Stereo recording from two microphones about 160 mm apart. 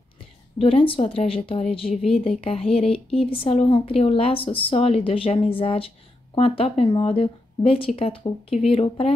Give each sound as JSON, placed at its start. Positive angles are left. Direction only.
{"t": 0.6, "sound": "speech", "side_deg": 35}